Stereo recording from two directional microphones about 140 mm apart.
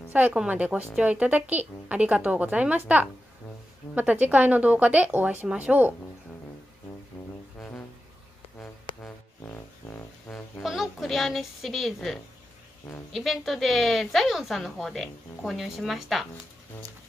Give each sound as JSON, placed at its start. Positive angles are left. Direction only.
{"t": 0.1, "sound": "a woman's voice", "side_deg": -10}
{"t": 7.2, "sound": "music", "side_deg": 10}
{"t": 8.9, "sound": "music", "side_deg": 35}
{"t": 9.4, "sound": "music", "side_deg": 15}
{"t": 10.6, "sound": "a woman's voice", "side_deg": 0}